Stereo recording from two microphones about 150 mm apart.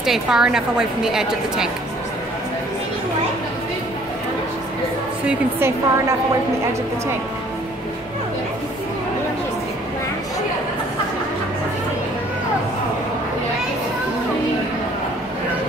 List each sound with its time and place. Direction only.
0.0 s a woman's voice: 5° right (ahead or behind)
5.2 s a woman's voice: 15° right (ahead or behind)